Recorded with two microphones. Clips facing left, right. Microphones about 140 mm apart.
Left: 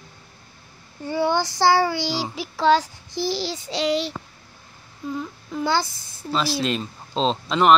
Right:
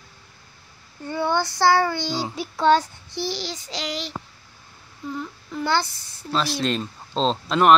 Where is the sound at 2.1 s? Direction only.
5° left (ahead or behind).